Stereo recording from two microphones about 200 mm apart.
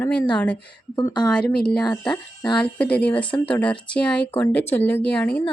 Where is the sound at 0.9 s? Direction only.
20° left (ahead or behind).